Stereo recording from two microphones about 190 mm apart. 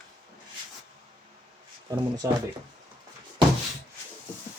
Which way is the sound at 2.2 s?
15° right (ahead or behind).